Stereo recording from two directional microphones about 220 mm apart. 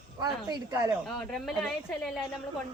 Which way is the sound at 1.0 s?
Centre (ahead or behind).